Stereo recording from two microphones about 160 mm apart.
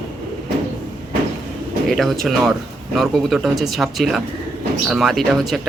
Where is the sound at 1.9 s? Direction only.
Centre (ahead or behind).